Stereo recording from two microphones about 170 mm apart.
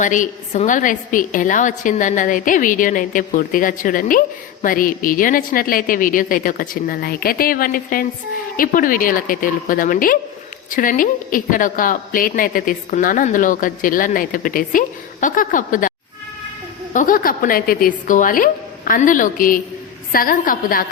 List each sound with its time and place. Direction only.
0.0 s a woman's voice: 50° left (ahead or behind)
16.9 s a woman's voice: 50° left (ahead or behind)